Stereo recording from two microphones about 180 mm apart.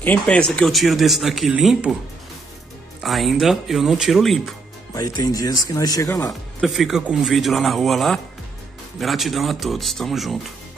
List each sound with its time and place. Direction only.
0.0 s speech: 10° left (ahead or behind)
3.0 s speech: centre (ahead or behind)
4.9 s speech: 20° left (ahead or behind)
6.6 s speech: centre (ahead or behind)